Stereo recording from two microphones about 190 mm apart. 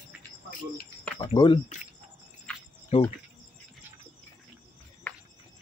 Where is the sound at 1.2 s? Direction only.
25° left (ahead or behind).